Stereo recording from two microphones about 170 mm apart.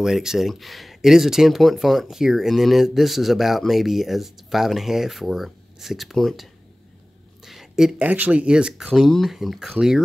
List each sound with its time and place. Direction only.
0.0 s speech: 5° right (ahead or behind)
7.4 s speech: centre (ahead or behind)